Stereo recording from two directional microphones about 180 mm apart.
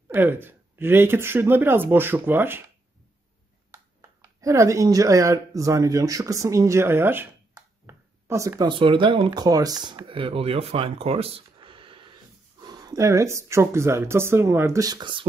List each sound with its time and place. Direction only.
0.1 s speech: 10° right (ahead or behind)
3.7 s speech: 20° right (ahead or behind)